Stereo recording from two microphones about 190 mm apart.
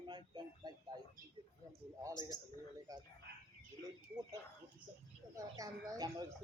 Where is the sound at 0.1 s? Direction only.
20° right (ahead or behind).